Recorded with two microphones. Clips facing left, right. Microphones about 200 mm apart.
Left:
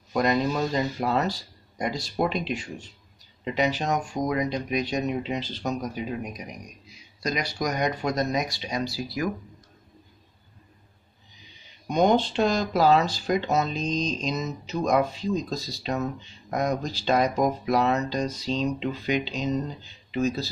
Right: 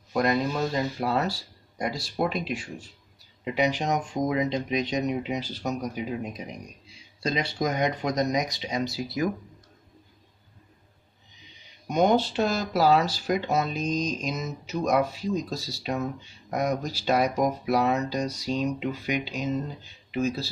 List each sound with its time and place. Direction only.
0.1 s speech: centre (ahead or behind)
3.4 s speech: 10° right (ahead or behind)
11.9 s speech: 5° right (ahead or behind)